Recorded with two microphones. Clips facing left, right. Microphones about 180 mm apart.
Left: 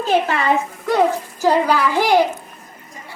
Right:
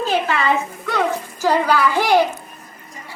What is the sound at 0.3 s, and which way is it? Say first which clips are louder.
Speech: even; 45° left (ahead or behind).